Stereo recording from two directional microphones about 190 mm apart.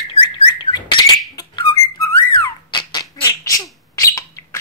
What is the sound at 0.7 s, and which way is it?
Bird, 25° left (ahead or behind).